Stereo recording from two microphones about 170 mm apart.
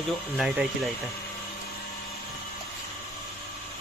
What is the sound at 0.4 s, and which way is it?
Speech, centre (ahead or behind).